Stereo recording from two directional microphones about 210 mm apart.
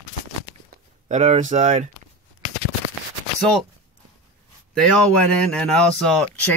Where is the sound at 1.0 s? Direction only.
30° right (ahead or behind).